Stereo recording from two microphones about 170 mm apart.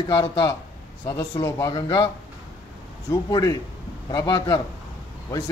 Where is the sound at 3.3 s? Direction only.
20° left (ahead or behind).